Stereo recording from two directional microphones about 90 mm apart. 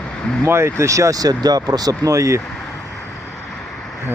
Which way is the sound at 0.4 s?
30° right (ahead or behind).